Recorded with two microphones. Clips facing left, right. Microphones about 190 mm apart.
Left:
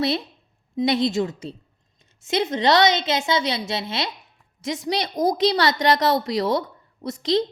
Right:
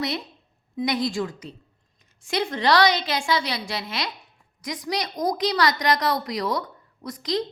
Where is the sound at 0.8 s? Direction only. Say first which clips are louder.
Left 4 dB; 25° left (ahead or behind).